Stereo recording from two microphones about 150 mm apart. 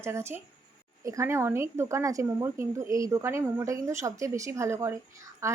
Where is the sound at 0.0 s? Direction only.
15° right (ahead or behind).